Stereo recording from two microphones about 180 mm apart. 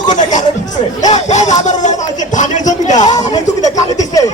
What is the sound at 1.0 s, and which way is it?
Speech, 40° left (ahead or behind).